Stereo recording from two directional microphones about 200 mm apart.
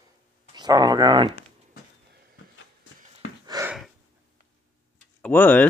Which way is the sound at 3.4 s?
20° right (ahead or behind).